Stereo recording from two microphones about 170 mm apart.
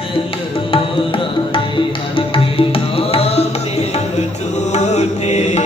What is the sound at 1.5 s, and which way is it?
Music, 30° left (ahead or behind).